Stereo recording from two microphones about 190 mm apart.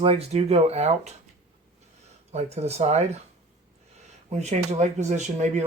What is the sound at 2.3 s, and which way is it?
Speech, 35° right (ahead or behind).